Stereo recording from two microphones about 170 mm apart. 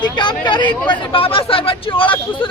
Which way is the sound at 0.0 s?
25° left (ahead or behind).